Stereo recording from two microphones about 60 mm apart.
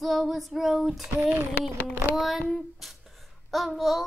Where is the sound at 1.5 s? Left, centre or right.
Left.